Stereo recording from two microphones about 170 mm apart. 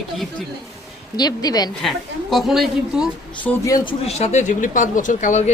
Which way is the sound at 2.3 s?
Centre (ahead or behind).